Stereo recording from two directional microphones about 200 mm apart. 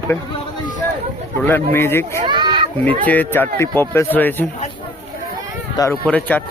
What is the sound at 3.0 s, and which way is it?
Speech, 10° left (ahead or behind).